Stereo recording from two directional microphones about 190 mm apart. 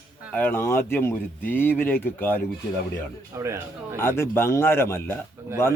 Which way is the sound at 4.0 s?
10° left (ahead or behind).